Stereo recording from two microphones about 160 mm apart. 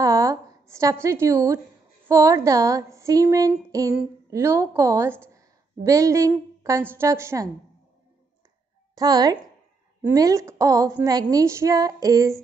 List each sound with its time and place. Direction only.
0.0 s a sound: 20° right (ahead or behind)
1.0 s a woman's voice: 15° right (ahead or behind)
8.9 s speech: 25° right (ahead or behind)